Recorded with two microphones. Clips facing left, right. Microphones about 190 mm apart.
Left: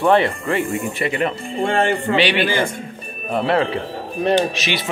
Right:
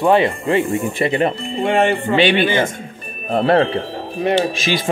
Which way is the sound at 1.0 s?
30° right (ahead or behind).